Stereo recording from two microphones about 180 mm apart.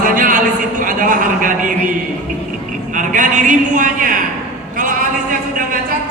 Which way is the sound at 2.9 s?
45° right (ahead or behind).